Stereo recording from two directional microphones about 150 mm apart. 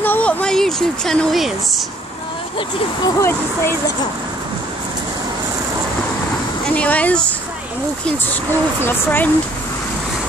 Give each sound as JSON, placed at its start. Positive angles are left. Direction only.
{"t": 0.0, "sound": "a sound", "side_deg": 10}
{"t": 3.2, "sound": "speech", "side_deg": 15}
{"t": 6.7, "sound": "speech", "side_deg": 10}
{"t": 8.8, "sound": "speech", "side_deg": 15}